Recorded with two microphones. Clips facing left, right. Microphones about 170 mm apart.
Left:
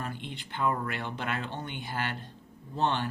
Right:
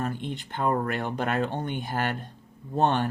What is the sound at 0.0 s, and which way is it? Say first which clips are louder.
Speech: right 7 dB; 50° right (ahead or behind).